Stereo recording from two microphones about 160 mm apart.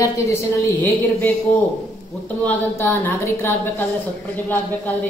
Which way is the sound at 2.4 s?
10° left (ahead or behind).